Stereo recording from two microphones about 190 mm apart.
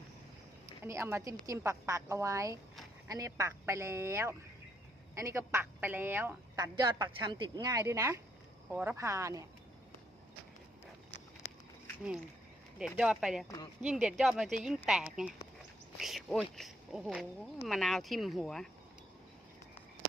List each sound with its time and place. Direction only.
0.9 s a woman's voice: 15° right (ahead or behind)
6.7 s a woman's voice: 20° right (ahead or behind)
12.8 s speech: centre (ahead or behind)